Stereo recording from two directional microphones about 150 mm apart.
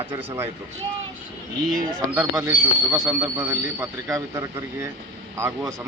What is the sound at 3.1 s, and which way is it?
Speech, 25° right (ahead or behind).